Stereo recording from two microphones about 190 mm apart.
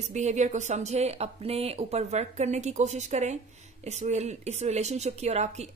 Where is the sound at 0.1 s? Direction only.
40° right (ahead or behind).